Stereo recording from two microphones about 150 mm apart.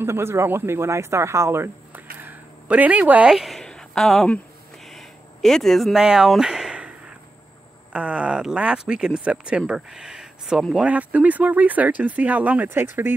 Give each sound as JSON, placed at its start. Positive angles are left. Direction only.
{"t": 0.0, "sound": "speech", "side_deg": -15}
{"t": 2.1, "sound": "a sound", "side_deg": -10}
{"t": 7.9, "sound": "speech", "side_deg": -10}